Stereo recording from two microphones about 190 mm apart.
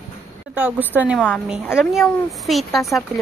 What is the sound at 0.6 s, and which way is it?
A woman's voice, 10° right (ahead or behind).